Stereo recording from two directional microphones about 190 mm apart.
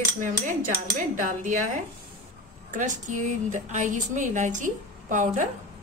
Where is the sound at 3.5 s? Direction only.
40° right (ahead or behind).